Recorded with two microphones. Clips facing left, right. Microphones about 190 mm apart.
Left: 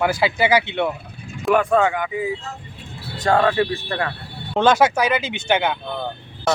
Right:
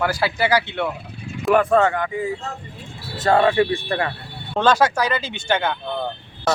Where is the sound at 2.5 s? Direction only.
55° right (ahead or behind).